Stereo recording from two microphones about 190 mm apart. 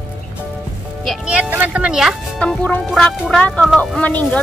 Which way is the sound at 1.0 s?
5° right (ahead or behind).